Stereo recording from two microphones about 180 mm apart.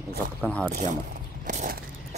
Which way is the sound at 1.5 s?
45° right (ahead or behind).